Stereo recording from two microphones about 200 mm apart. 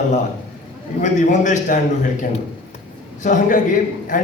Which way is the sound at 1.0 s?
35° left (ahead or behind).